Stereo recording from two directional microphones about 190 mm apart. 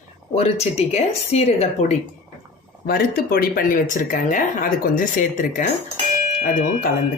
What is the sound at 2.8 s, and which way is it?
Speech, 50° left (ahead or behind).